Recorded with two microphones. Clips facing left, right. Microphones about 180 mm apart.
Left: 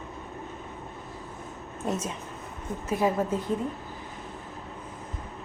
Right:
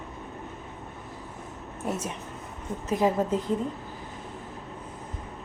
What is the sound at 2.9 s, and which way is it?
Speech, 15° right (ahead or behind).